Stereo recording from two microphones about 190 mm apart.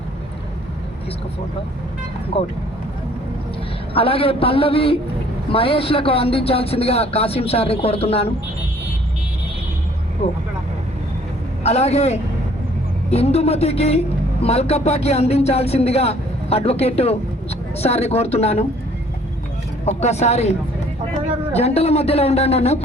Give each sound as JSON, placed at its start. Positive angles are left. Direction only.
{"t": 2.3, "sound": "a man's voice", "side_deg": 30}
{"t": 3.9, "sound": "a man's voice", "side_deg": 30}
{"t": 10.2, "sound": "speech", "side_deg": 30}
{"t": 11.6, "sound": "speech", "side_deg": 35}
{"t": 19.8, "sound": "speech", "side_deg": 35}